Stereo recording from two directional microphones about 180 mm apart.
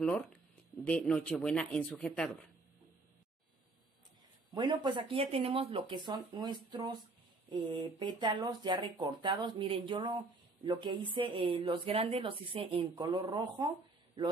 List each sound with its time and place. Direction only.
0.0 s speech: 10° left (ahead or behind)
4.6 s speech: 25° right (ahead or behind)